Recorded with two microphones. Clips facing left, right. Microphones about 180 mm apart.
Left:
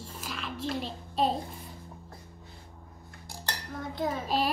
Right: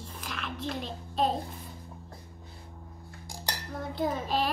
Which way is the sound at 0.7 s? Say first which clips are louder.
Left 2 dB; 45° right (ahead or behind).